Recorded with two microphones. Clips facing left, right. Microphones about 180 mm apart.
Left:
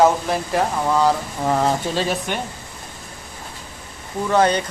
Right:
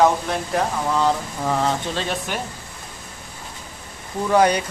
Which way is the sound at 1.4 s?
15° left (ahead or behind).